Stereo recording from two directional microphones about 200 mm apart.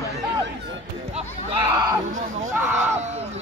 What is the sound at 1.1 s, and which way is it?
Speech, 25° right (ahead or behind).